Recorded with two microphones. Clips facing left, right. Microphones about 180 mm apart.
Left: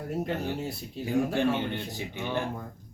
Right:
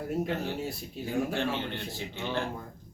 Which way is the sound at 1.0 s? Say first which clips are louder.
Left 4 dB; 15° left (ahead or behind).